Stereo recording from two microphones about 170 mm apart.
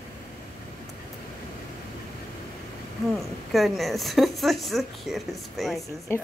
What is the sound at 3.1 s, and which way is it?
Speech, centre (ahead or behind).